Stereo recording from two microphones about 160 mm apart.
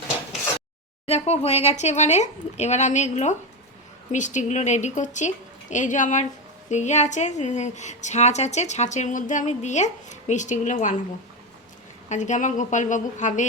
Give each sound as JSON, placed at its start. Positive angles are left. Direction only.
{"t": 1.0, "sound": "a woman's voice", "side_deg": 40}
{"t": 12.0, "sound": "a woman's voice", "side_deg": 50}